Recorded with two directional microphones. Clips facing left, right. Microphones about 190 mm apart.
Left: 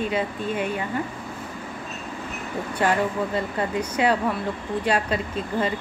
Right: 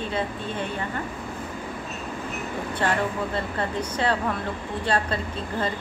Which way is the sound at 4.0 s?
10° left (ahead or behind).